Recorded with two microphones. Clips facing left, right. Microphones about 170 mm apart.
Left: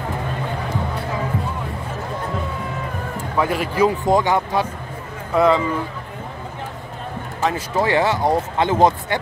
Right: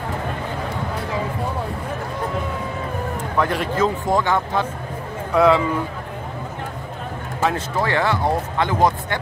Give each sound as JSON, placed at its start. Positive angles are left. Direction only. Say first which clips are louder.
{"t": 3.3, "sound": "speech", "louder": "left 2 dB", "side_deg": 5}
{"t": 5.3, "sound": "speech", "louder": "right 1 dB", "side_deg": 0}
{"t": 7.7, "sound": "speech", "louder": "left 2 dB", "side_deg": 20}